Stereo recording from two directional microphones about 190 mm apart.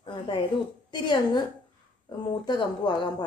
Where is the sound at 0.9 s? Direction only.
25° left (ahead or behind).